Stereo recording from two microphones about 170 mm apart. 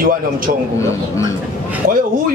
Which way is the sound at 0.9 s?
15° left (ahead or behind).